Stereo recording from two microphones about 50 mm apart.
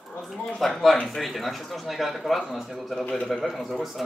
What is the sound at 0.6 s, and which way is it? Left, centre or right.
A man's voice, centre.